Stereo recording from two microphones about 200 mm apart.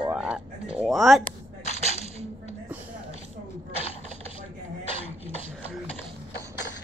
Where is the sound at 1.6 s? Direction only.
35° left (ahead or behind).